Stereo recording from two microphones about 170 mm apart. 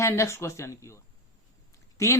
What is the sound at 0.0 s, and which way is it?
Speech, 15° left (ahead or behind).